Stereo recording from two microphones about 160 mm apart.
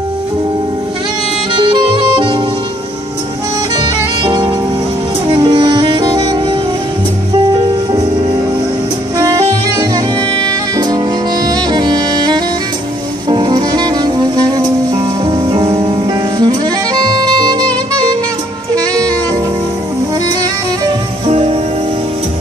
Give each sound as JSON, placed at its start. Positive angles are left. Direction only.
{"t": 1.5, "sound": "saxophone", "side_deg": -30}
{"t": 4.2, "sound": "music", "side_deg": -30}
{"t": 9.8, "sound": "music", "side_deg": -25}
{"t": 11.4, "sound": "saxophone", "side_deg": -25}
{"t": 13.3, "sound": "music", "side_deg": -25}
{"t": 16.3, "sound": "saxophone", "side_deg": -25}
{"t": 21.3, "sound": "music", "side_deg": -35}